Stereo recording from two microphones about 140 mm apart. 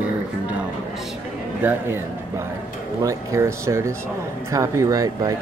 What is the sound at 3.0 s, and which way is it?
Speech, 25° right (ahead or behind).